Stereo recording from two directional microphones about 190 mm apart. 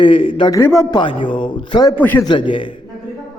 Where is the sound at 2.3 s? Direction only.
25° left (ahead or behind).